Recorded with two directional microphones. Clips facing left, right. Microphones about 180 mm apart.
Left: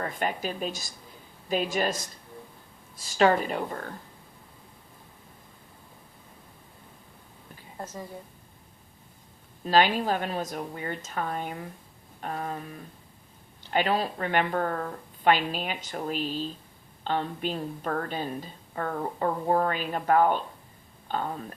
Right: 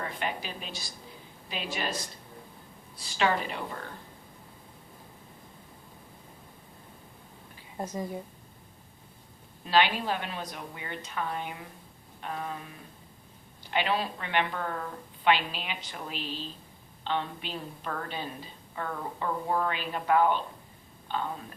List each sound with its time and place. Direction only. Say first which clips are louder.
0.0 s a woman's voice: left 4 dB; 45° left (ahead or behind)
3.2 s a woman's voice: left 6 dB; 45° left (ahead or behind)
7.8 s a woman's voice: right 4 dB; 15° right (ahead or behind)
9.6 s a woman's voice: left 3 dB; 45° left (ahead or behind)
13.7 s a woman's voice: left 3 dB; 40° left (ahead or behind)